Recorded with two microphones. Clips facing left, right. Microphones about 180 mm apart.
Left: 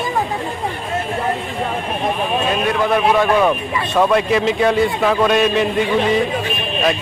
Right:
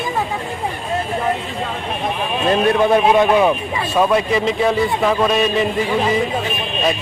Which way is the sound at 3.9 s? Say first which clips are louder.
Left 1 dB; 5° right (ahead or behind).